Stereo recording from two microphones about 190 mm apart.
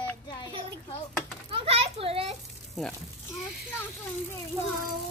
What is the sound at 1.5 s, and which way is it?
Children playing, 30° right (ahead or behind).